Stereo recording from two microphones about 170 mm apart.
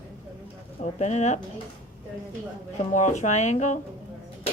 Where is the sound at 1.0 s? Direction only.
40° left (ahead or behind).